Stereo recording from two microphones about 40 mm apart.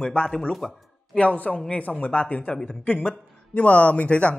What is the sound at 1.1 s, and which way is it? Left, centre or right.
A man's voice, left.